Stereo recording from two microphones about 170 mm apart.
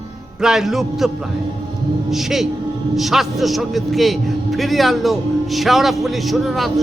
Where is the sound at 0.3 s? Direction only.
5° right (ahead or behind).